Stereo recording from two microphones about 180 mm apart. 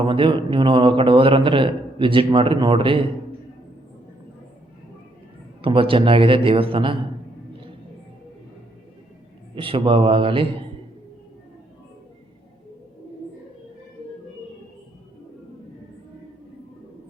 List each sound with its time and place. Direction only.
0.0 s a man's voice: 30° right (ahead or behind)
5.6 s a man's voice: 30° right (ahead or behind)
9.6 s a man's voice: 30° right (ahead or behind)